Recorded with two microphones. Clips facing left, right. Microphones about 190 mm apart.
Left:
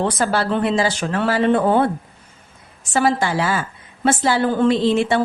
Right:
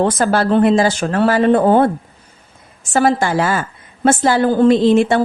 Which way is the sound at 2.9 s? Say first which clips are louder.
Right 4 dB; 45° right (ahead or behind).